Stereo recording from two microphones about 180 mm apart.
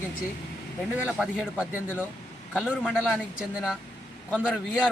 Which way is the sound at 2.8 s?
5° right (ahead or behind).